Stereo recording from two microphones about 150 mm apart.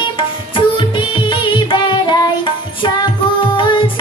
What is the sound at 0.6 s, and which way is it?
Music, 35° left (ahead or behind).